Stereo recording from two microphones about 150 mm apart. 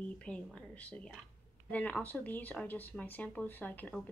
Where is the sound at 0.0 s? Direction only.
10° left (ahead or behind).